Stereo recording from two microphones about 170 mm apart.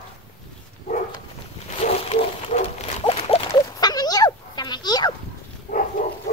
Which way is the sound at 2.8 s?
35° left (ahead or behind).